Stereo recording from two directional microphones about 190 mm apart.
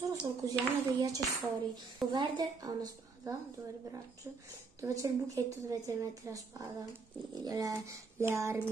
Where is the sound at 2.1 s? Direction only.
20° right (ahead or behind).